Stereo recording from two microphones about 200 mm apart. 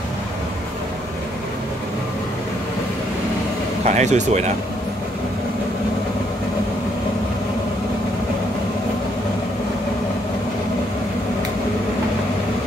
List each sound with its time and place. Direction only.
3.8 s speech: 35° right (ahead or behind)